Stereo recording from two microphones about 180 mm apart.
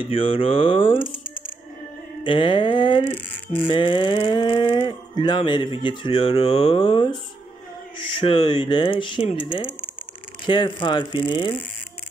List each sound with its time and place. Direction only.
0.0 s rattle: 30° left (ahead or behind)
2.2 s rattle: 25° left (ahead or behind)